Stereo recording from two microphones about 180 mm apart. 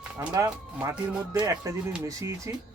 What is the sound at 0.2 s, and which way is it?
Speech, 15° right (ahead or behind).